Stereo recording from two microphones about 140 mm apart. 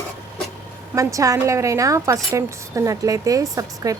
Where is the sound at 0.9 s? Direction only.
25° right (ahead or behind).